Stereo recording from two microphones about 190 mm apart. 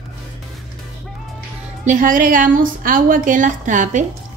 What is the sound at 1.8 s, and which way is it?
A woman's voice, 40° right (ahead or behind).